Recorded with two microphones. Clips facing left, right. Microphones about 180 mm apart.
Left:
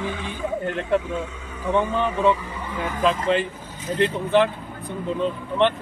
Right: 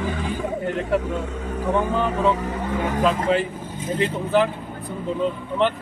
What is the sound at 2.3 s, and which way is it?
Vehicle, 45° right (ahead or behind).